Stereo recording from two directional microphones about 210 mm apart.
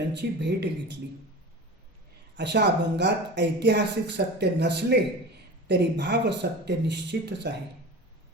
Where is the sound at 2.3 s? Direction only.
55° right (ahead or behind).